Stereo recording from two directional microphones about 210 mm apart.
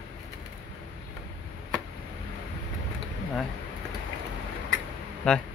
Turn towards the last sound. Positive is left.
turn(degrees=5)  # may be behind; listen again after turning